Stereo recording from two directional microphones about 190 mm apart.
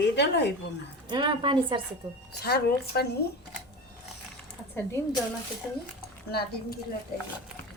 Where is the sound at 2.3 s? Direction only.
60° left (ahead or behind).